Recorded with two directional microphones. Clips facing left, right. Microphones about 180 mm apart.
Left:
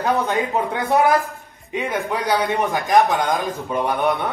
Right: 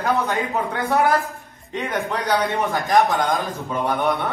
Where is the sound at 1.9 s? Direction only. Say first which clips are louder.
Even; 5° left (ahead or behind).